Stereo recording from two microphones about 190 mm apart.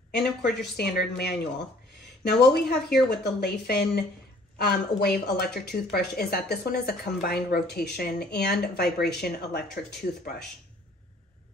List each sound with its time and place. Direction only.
0.1 s a woman's voice: 60° left (ahead or behind)